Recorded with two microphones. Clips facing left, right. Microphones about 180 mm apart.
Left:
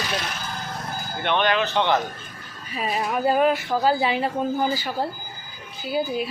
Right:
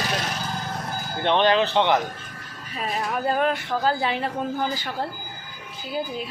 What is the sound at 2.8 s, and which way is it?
A woman's voice, 5° left (ahead or behind).